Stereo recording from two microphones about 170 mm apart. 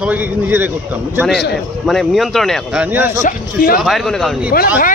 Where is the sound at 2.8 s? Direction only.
10° right (ahead or behind).